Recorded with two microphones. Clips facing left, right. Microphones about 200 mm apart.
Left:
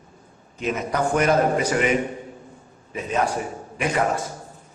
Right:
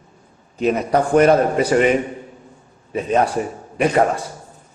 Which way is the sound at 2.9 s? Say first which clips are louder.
Right 6 dB; 35° right (ahead or behind).